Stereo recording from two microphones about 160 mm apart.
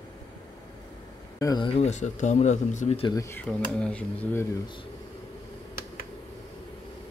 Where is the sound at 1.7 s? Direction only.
45° left (ahead or behind).